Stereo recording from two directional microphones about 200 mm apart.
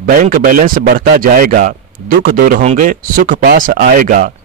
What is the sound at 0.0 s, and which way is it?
Speech, 45° right (ahead or behind).